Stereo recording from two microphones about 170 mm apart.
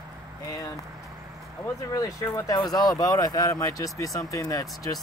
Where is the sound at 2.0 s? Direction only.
20° left (ahead or behind).